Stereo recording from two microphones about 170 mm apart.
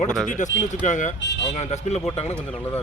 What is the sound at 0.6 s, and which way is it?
Speech, 45° left (ahead or behind).